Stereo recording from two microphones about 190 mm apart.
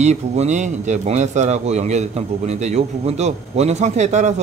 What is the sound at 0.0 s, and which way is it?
A man's voice, 35° right (ahead or behind).